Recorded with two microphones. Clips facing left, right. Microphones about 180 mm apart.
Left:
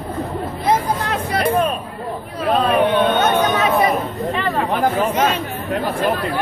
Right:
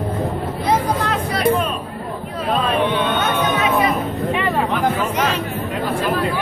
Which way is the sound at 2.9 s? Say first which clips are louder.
Left 4 dB; 45° left (ahead or behind).